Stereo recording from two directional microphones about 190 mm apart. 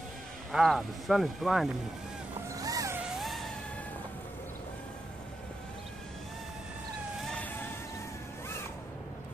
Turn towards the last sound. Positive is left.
turn(degrees=10)  # may be behind; listen again after turning